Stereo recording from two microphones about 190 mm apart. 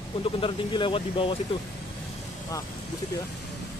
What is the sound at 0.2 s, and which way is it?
Speech, 25° left (ahead or behind).